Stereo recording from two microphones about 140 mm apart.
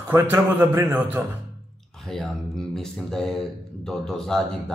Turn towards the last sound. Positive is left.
turn(degrees=5)  # may be behind; listen again after turning